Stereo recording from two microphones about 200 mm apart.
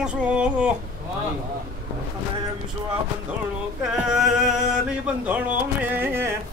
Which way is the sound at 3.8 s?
5° right (ahead or behind).